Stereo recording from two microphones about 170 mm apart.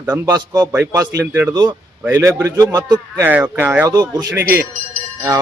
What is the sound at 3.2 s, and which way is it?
Speech, 10° right (ahead or behind).